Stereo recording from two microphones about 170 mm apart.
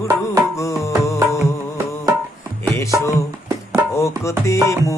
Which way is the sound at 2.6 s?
15° left (ahead or behind).